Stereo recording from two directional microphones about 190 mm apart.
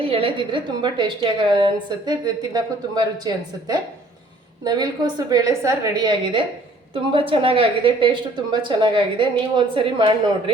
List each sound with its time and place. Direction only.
0.0 s a woman's voice: 30° right (ahead or behind)